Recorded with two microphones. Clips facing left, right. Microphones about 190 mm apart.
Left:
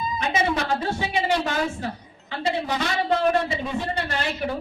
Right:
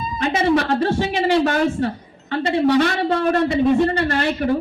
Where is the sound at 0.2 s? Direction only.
65° right (ahead or behind).